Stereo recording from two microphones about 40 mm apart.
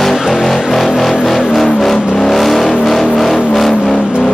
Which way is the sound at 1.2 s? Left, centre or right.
Centre.